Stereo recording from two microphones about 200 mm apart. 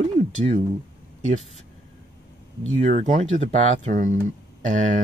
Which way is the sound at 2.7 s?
35° right (ahead or behind).